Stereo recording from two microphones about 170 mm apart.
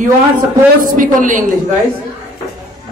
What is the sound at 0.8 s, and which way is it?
Speech, 50° right (ahead or behind).